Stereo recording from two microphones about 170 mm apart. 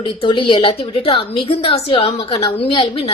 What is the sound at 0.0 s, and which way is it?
A woman's voice, 30° left (ahead or behind).